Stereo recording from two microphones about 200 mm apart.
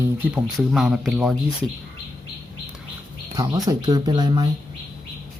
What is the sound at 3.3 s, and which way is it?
Speech, 15° right (ahead or behind).